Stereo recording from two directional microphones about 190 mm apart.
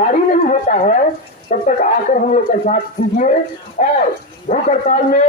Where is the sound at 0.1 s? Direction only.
40° left (ahead or behind).